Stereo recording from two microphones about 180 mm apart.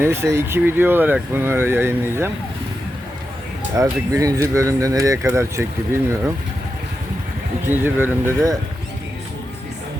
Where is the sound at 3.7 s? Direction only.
20° right (ahead or behind).